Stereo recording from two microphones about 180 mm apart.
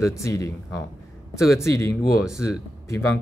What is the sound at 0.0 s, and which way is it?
Speech, 15° left (ahead or behind).